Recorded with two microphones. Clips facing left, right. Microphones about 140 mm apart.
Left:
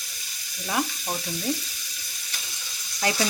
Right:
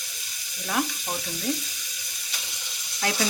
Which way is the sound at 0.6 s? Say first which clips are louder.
Even; 5° left (ahead or behind).